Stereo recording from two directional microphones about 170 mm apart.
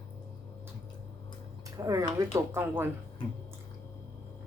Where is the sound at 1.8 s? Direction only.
20° right (ahead or behind).